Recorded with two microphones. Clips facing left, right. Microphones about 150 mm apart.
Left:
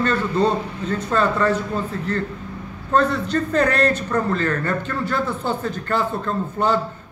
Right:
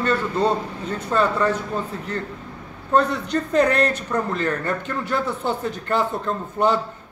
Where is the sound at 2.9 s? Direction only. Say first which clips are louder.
Left 1 dB; 15° right (ahead or behind).